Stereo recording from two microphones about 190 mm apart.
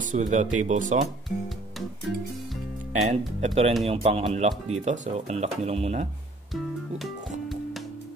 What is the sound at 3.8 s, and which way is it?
Speech, 30° right (ahead or behind).